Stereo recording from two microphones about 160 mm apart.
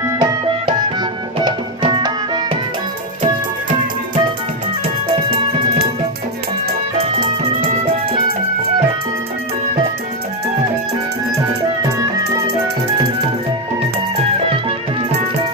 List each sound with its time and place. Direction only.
0.2 s music: 25° right (ahead or behind)
7.0 s music: 35° right (ahead or behind)